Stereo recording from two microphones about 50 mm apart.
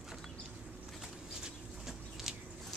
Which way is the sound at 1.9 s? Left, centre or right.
Centre.